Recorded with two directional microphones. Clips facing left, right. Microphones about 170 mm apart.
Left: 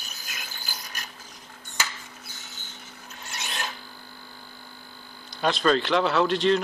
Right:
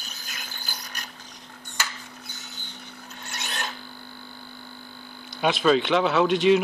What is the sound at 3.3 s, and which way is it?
Filing, centre (ahead or behind).